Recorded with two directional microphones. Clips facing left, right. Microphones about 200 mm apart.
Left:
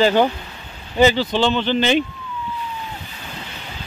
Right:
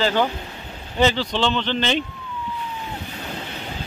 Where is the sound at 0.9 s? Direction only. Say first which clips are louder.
Left 4 dB; 5° left (ahead or behind).